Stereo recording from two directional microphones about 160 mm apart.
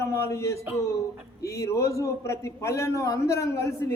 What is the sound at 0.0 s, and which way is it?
A man's voice, 20° left (ahead or behind).